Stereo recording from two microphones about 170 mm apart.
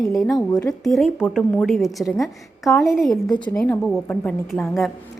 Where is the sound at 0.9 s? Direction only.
Centre (ahead or behind).